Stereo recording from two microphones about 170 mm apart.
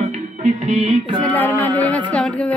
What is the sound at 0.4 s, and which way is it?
Music, 40° right (ahead or behind).